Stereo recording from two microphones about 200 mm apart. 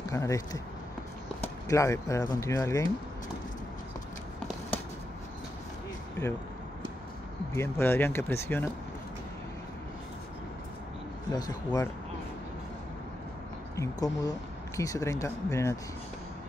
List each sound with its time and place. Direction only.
0.1 s speech: 15° left (ahead or behind)
7.5 s speech: 10° left (ahead or behind)
11.3 s speech: 20° left (ahead or behind)
13.7 s speech: 20° left (ahead or behind)